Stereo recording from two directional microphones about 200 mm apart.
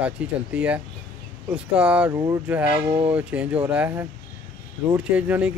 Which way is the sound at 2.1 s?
15° right (ahead or behind).